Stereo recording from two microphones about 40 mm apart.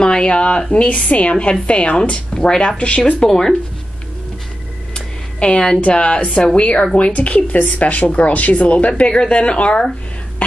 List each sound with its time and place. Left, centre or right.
0.0 s speech: left
0.8 s speech: left; by 3.5 s centre
4.9 s a sound: left
5.8 s speech: left
9.1 s speech: left